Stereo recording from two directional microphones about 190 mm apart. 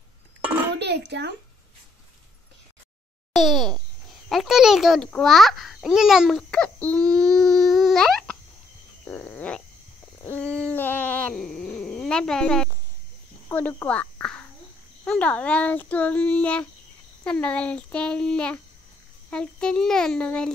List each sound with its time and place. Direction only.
0.7 s a child's voice: 65° right (ahead or behind)
3.3 s a child's voice: centre (ahead or behind)
9.0 s a sound: 10° left (ahead or behind)
10.2 s hoot: 10° left (ahead or behind)
13.5 s a child's voice: 10° left (ahead or behind)